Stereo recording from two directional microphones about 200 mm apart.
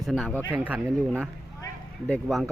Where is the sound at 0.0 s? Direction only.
Centre (ahead or behind).